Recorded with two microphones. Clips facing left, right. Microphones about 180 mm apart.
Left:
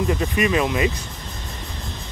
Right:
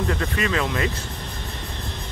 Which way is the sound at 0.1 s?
15° left (ahead or behind).